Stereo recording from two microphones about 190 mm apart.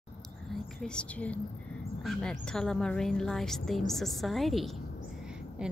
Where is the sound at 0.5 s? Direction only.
5° left (ahead or behind).